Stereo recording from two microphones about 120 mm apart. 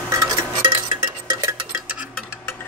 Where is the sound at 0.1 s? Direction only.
30° right (ahead or behind).